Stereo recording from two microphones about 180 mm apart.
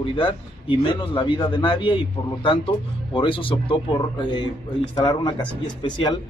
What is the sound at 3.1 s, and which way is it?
Speech, 30° left (ahead or behind).